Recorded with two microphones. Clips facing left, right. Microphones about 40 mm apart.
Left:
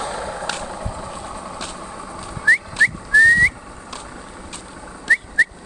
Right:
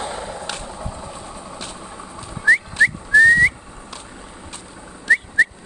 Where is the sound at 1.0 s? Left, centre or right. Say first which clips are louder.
Left 3 dB; left.